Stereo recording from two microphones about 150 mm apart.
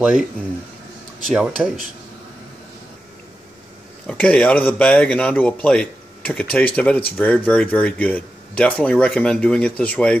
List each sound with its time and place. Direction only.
1.2 s speech: centre (ahead or behind)
4.1 s speech: 10° left (ahead or behind)